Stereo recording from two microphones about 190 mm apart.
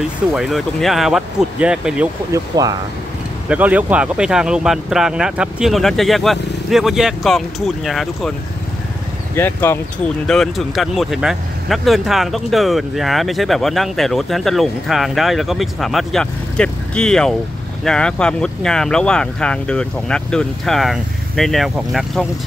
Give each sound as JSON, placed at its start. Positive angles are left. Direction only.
{"t": 0.3, "sound": "speech", "side_deg": 0}
{"t": 2.3, "sound": "speech", "side_deg": -20}
{"t": 3.4, "sound": "speech", "side_deg": -10}
{"t": 9.3, "sound": "speech", "side_deg": 10}